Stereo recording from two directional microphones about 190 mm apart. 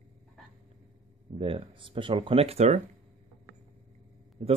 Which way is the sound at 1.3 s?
30° right (ahead or behind).